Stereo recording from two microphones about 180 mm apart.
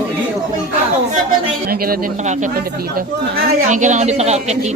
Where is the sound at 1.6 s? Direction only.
55° right (ahead or behind).